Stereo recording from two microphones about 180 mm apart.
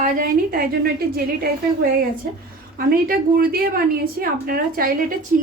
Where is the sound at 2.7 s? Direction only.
55° right (ahead or behind).